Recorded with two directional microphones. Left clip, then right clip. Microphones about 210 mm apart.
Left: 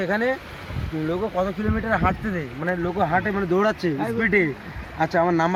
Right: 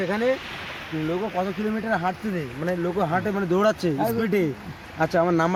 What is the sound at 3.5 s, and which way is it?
Speech, 40° right (ahead or behind).